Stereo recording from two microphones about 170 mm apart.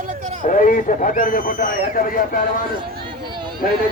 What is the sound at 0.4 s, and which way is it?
A man's voice, 50° left (ahead or behind).